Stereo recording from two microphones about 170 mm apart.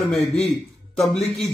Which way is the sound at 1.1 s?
Centre (ahead or behind).